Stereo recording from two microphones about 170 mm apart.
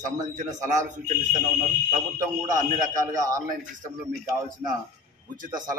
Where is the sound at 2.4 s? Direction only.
50° right (ahead or behind).